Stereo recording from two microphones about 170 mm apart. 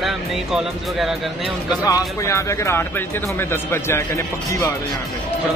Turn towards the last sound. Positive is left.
turn(degrees=20)  # may be behind; listen again after turning